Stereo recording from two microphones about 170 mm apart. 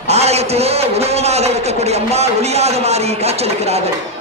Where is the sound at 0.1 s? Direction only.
40° right (ahead or behind).